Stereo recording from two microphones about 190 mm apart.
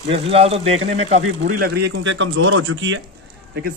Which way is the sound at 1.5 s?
55° right (ahead or behind).